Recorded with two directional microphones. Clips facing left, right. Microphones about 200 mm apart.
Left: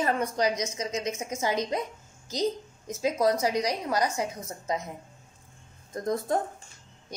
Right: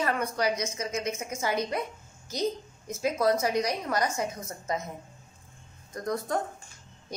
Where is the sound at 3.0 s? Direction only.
15° left (ahead or behind).